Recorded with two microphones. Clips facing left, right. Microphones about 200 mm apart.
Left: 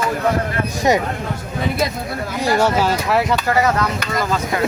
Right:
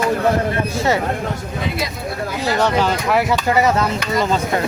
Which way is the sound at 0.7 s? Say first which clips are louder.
Left 4 dB; 15° left (ahead or behind).